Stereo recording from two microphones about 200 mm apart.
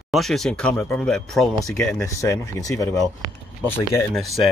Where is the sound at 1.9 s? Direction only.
15° left (ahead or behind).